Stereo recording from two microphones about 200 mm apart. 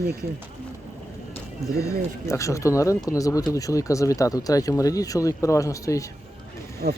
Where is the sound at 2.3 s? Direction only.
15° left (ahead or behind).